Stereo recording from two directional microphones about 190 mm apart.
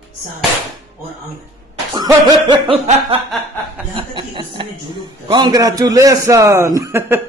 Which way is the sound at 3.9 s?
30° right (ahead or behind).